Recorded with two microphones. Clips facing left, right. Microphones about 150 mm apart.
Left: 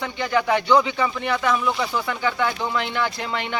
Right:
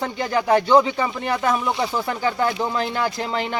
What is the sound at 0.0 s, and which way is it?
Speech, 35° right (ahead or behind).